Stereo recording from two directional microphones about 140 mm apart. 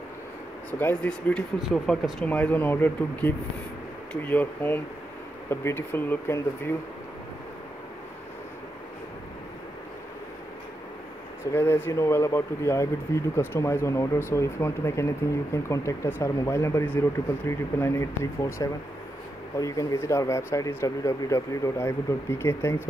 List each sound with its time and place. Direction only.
0.7 s speech: 10° left (ahead or behind)
1.6 s speech: centre (ahead or behind); by 6.7 s 15° left (ahead or behind)
11.5 s speech: 15° left (ahead or behind)